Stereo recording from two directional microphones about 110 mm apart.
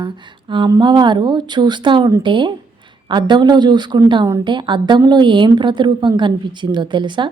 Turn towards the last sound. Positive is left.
turn(degrees=-45)  # may be behind; listen again after turning